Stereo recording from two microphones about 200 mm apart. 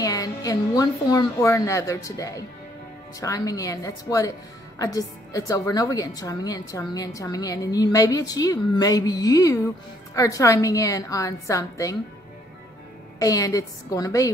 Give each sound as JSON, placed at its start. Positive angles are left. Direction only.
{"t": 0.0, "sound": "a woman's voice", "side_deg": 20}
{"t": 13.2, "sound": "a woman's voice", "side_deg": 15}